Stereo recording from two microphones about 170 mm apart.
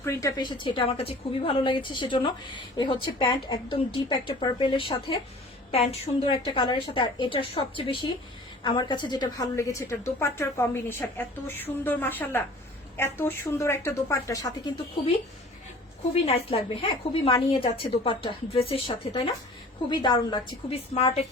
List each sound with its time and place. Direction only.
0.0 s a woman's voice: 15° left (ahead or behind)
16.2 s a woman's voice: 35° left (ahead or behind)